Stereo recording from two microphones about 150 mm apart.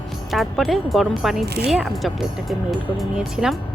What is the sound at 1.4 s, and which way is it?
Speech, 90° right.